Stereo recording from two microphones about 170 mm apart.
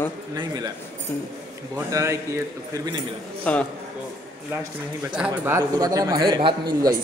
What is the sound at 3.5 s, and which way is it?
Speech, 5° left (ahead or behind).